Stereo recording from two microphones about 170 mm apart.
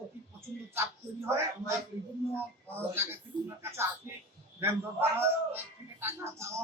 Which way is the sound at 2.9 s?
15° right (ahead or behind).